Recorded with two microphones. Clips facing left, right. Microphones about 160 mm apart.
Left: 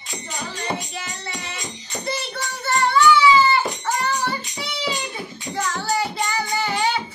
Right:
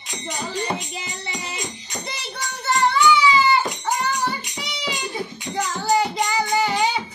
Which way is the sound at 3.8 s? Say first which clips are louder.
Even; 15° right (ahead or behind).